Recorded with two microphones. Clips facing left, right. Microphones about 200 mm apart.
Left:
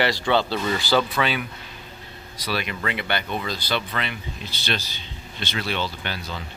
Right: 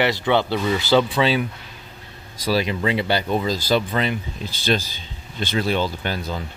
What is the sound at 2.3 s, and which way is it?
Speech, 45° right (ahead or behind).